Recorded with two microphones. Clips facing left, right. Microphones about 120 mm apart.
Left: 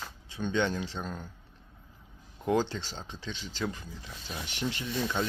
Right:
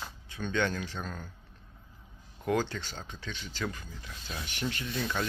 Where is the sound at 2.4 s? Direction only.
25° left (ahead or behind).